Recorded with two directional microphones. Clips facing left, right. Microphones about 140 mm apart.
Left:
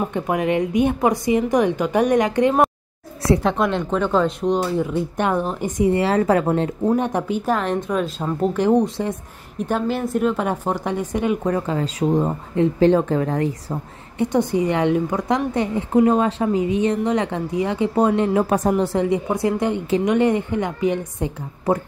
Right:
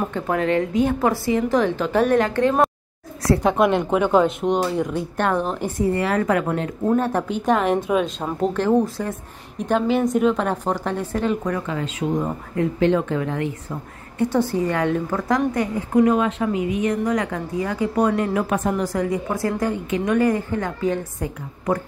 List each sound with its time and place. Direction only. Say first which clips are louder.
0.0 s a woman's voice: left 1 dB; 15° left (ahead or behind)
3.4 s speech: right 2 dB; 5° right (ahead or behind)
5.1 s a woman's voice: right 2 dB; 10° left (ahead or behind)
5.8 s a woman's voice: left 4 dB; 25° left (ahead or behind)
7.0 s a woman's voice: even; 15° left (ahead or behind)
7.4 s speech: right 2 dB; 5° right (ahead or behind)
8.5 s a woman's voice: left 2 dB; 15° left (ahead or behind)
9.7 s a woman's voice: right 3 dB; 5° left (ahead or behind)
11.4 s speech: left 3 dB; 30° left (ahead or behind)
14.1 s a woman's voice: left 1 dB; 20° left (ahead or behind)